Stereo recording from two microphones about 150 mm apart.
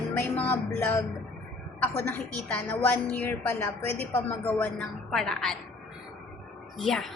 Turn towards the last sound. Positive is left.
turn(degrees=0)  # may be behind; listen again after turning